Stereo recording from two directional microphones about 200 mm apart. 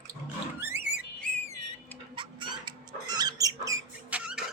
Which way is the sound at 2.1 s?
25° right (ahead or behind).